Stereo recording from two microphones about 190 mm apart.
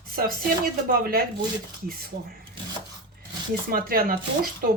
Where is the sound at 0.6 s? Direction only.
50° right (ahead or behind).